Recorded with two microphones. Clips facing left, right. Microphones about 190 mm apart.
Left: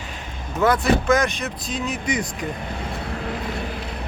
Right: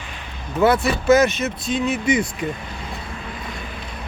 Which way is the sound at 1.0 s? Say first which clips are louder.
Right 5 dB; 5° right (ahead or behind).